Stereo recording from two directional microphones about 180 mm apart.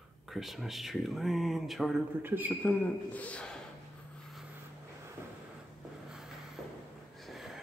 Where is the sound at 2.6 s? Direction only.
10° left (ahead or behind).